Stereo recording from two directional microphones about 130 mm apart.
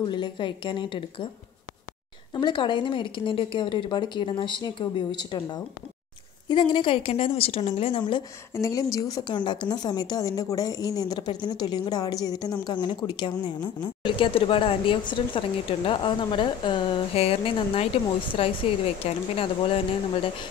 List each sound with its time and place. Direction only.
0.0 s speech: 35° left (ahead or behind)
2.3 s a woman's voice: 35° left (ahead or behind)
8.5 s a woman's voice: 25° left (ahead or behind); by 19.8 s 45° left (ahead or behind)